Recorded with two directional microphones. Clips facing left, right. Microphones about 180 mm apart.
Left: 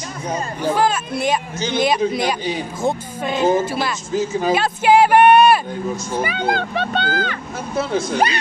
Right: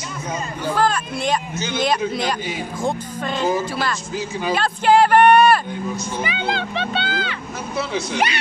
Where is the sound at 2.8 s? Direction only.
10° left (ahead or behind).